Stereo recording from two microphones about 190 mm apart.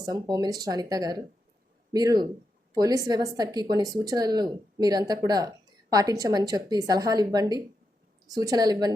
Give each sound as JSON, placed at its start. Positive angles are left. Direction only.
{"t": 0.0, "sound": "speech", "side_deg": -20}